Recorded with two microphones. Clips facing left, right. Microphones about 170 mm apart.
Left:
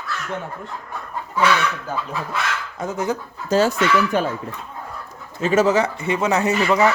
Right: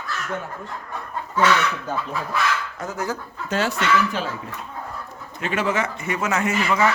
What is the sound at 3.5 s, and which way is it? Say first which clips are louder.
Speech: left 6 dB; 40° left (ahead or behind).